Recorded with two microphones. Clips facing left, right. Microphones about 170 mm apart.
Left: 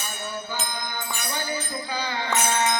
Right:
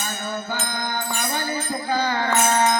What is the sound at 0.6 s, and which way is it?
Music, 60° right (ahead or behind).